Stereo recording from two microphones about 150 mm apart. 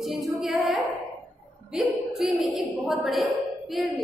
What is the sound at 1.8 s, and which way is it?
A woman's voice, centre (ahead or behind).